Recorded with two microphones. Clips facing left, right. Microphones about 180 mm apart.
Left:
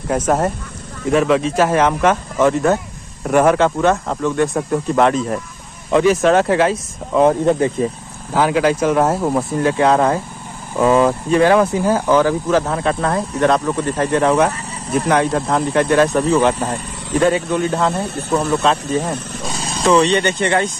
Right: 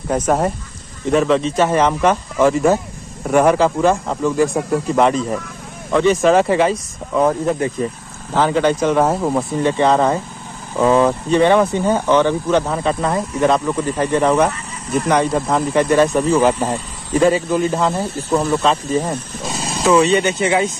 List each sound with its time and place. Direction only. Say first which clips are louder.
0.1 s speech: even; 5° left (ahead or behind)
5.9 s speech: left 1 dB; 15° left (ahead or behind)
6.2 s speech: even; centre (ahead or behind)
7.2 s speech: left 3 dB; 30° left (ahead or behind)
8.3 s speech: even; 5° left (ahead or behind)